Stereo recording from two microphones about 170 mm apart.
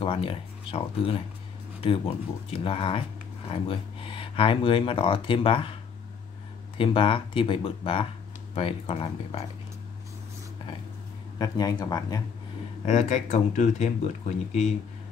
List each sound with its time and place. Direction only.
0.0 s speech: 30° left (ahead or behind)
6.8 s speech: 30° left (ahead or behind)
11.3 s speech: 20° left (ahead or behind)
12.8 s speech: 40° left (ahead or behind)